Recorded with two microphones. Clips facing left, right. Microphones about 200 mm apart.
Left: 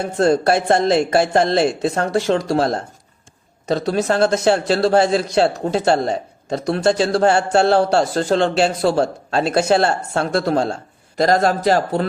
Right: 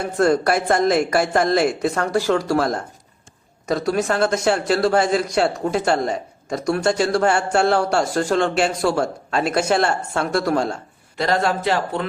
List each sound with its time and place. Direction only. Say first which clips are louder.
0.0 s speech: left 2 dB; 25° left (ahead or behind)
11.2 s a man's voice: left 4 dB; 40° left (ahead or behind)